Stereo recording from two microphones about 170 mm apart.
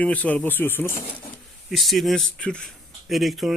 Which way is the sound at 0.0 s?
10° left (ahead or behind).